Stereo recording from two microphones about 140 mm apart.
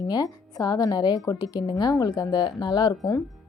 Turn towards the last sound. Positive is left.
turn(degrees=25)  # may be behind; listen again after turning